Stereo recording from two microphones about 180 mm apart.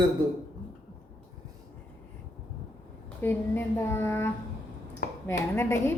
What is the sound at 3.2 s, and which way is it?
A woman's voice, 10° left (ahead or behind).